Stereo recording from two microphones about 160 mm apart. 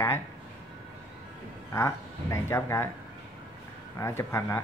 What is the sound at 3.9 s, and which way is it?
Speech, 15° left (ahead or behind).